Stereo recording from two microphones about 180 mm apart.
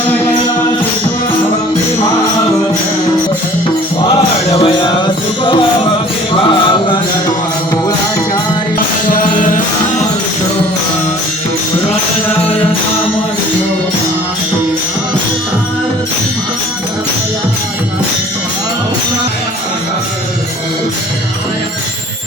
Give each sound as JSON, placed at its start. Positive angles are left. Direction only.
{"t": 4.1, "sound": "music", "side_deg": 30}
{"t": 9.0, "sound": "music", "side_deg": 50}